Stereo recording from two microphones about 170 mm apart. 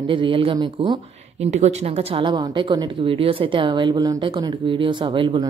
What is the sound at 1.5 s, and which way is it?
A woman's voice, 40° right (ahead or behind).